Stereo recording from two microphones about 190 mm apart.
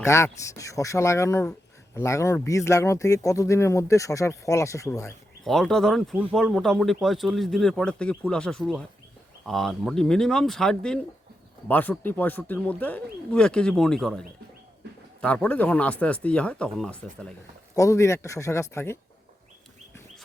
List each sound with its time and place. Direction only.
0.0 s speech: 15° left (ahead or behind)
5.5 s a man's voice: 5° left (ahead or behind)
17.7 s speech: 15° left (ahead or behind)